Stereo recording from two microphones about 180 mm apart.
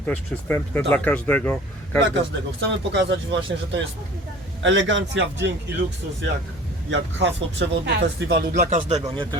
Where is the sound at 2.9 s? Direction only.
75° right (ahead or behind).